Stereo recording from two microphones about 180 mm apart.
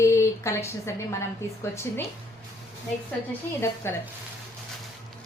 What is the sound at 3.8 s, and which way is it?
Speech, 15° left (ahead or behind).